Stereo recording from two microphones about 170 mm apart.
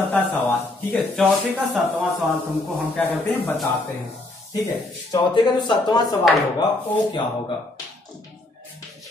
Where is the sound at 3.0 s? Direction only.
10° left (ahead or behind).